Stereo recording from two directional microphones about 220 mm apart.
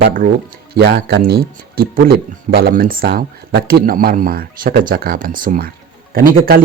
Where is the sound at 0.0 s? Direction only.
40° right (ahead or behind).